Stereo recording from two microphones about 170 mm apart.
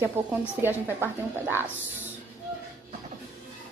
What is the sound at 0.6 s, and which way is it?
A woman's voice, 10° right (ahead or behind).